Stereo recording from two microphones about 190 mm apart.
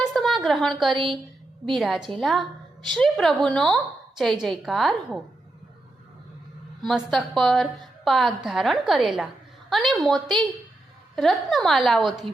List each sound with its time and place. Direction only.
0.0 s a sound: centre (ahead or behind)
0.9 s a woman's voice: 25° right (ahead or behind)
1.7 s a woman's voice: centre (ahead or behind)
6.8 s a woman's voice: centre (ahead or behind)